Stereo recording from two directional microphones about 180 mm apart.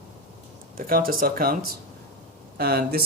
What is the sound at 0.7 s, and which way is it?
Speech, 55° right (ahead or behind).